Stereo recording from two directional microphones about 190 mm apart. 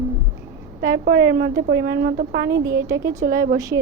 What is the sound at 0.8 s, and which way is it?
A woman's voice, 50° right (ahead or behind).